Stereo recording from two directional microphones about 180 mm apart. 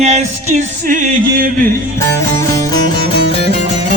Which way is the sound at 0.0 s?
40° right (ahead or behind).